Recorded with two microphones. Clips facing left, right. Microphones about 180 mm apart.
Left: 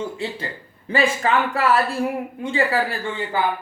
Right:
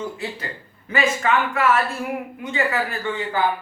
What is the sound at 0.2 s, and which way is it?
A man's voice, 25° left (ahead or behind).